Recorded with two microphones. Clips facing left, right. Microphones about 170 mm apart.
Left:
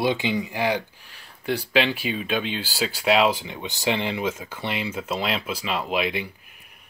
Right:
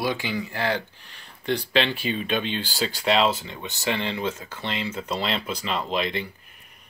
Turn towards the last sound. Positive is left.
turn(degrees=10)  # may be behind; listen again after turning